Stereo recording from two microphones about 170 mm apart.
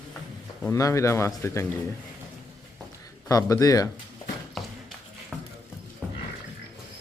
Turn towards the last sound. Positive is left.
turn(degrees=-5)  # may be behind; listen again after turning